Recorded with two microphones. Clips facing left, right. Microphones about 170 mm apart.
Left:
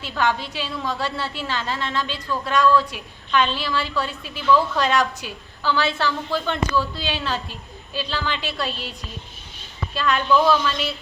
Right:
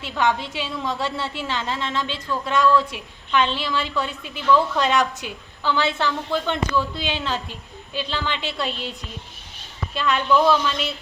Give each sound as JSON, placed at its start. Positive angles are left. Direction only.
{"t": 0.2, "sound": "a woman's voice", "side_deg": -20}
{"t": 10.3, "sound": "a woman's voice", "side_deg": 0}